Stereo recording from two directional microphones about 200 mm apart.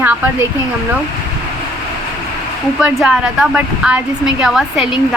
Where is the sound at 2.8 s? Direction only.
5° right (ahead or behind).